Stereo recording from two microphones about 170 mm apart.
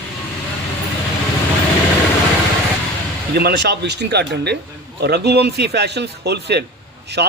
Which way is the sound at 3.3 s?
75° right (ahead or behind).